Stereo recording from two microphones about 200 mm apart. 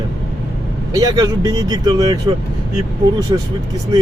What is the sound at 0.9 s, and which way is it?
Speech, 20° right (ahead or behind).